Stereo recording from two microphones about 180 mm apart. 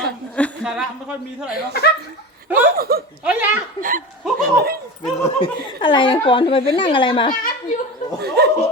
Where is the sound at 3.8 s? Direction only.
50° right (ahead or behind).